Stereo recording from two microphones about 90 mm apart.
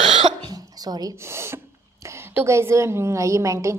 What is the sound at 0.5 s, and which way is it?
Dog, 45° right (ahead or behind).